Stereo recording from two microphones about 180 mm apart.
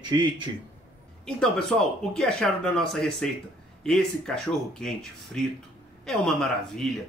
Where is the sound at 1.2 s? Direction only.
5° left (ahead or behind).